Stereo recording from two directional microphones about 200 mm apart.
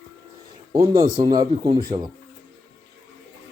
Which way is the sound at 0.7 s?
20° right (ahead or behind).